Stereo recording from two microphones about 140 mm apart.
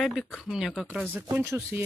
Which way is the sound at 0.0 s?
Centre (ahead or behind).